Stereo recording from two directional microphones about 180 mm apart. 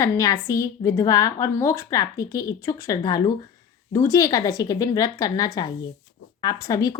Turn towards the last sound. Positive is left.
turn(degrees=20)  # may be behind; listen again after turning